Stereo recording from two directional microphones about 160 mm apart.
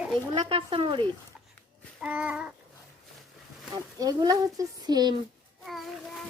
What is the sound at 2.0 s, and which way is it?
Babbling, 10° right (ahead or behind).